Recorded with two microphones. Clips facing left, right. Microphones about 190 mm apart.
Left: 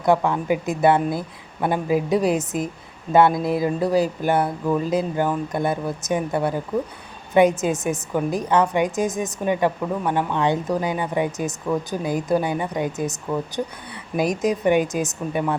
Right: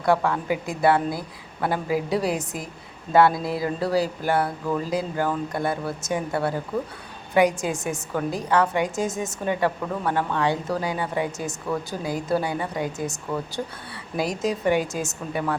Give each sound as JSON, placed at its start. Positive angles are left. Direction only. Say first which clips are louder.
{"t": 0.0, "sound": "a woman's voice", "louder": "left 2 dB", "side_deg": 20}